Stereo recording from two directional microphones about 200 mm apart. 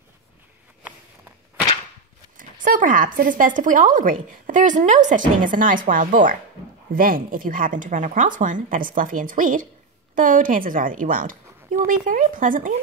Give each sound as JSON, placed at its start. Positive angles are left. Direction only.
{"t": 2.3, "sound": "a woman's voice", "side_deg": -40}